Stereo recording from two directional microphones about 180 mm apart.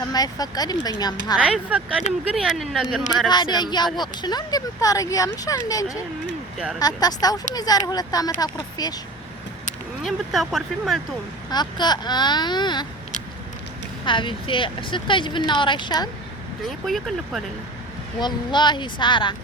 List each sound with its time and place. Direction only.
0.1 s speech: 20° left (ahead or behind)
1.4 s speech: 5° right (ahead or behind)
3.2 s speech: 25° left (ahead or behind)
10.0 s speech: centre (ahead or behind)
11.5 s speech: 25° left (ahead or behind)
14.0 s speech: 25° left (ahead or behind)
16.6 s speech: centre (ahead or behind)
18.2 s speech: 25° left (ahead or behind)